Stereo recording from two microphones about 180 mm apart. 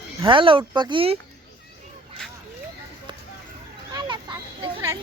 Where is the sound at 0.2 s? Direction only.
25° right (ahead or behind).